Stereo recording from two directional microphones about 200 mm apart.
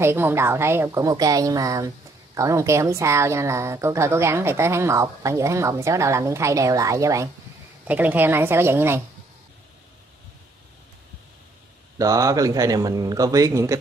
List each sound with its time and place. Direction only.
0.0 s speech: 10° right (ahead or behind)
12.0 s speech: 15° right (ahead or behind)